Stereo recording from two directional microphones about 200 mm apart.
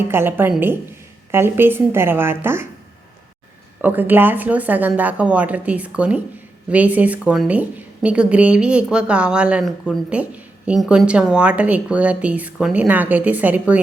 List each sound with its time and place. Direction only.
0.1 s a woman's voice: 10° right (ahead or behind)
3.8 s a woman's voice: 10° right (ahead or behind)